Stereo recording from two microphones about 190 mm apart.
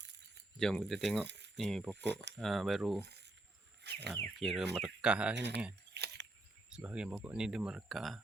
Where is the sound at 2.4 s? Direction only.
Centre (ahead or behind).